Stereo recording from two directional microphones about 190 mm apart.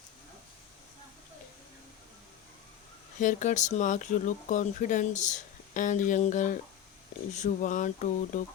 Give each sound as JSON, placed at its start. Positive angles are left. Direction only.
{"t": 3.2, "sound": "speech", "side_deg": 40}